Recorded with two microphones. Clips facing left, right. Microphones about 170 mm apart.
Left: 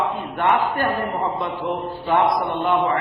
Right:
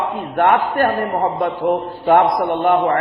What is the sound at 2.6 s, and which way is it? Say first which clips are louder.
Speech: right 5 dB; 55° right (ahead or behind).